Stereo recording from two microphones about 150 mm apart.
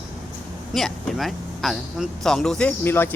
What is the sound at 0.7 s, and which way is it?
Speech, centre (ahead or behind).